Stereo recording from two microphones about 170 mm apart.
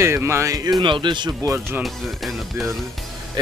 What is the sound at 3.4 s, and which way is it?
Speech, 25° right (ahead or behind).